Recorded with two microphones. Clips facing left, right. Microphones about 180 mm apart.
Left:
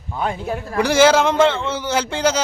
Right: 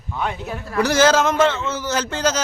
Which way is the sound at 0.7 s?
10° left (ahead or behind).